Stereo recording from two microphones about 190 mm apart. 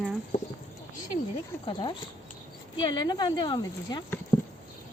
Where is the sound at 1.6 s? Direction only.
25° left (ahead or behind).